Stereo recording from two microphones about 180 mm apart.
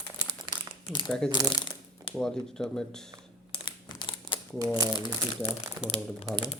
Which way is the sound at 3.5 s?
25° left (ahead or behind).